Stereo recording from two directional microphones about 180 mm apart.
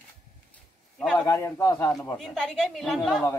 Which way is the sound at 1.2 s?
15° left (ahead or behind).